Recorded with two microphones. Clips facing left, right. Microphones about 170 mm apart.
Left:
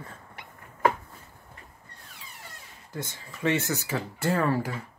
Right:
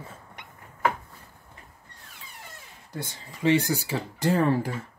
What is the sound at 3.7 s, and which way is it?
Speech, 30° right (ahead or behind).